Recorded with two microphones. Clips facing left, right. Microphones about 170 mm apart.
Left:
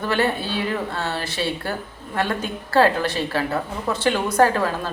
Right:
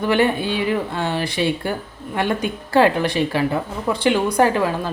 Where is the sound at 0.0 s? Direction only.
15° right (ahead or behind).